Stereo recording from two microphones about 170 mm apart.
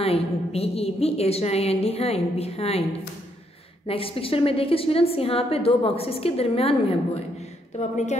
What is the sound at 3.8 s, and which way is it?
A woman's voice, 35° left (ahead or behind).